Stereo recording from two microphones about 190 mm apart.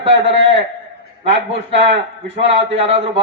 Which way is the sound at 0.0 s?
30° right (ahead or behind).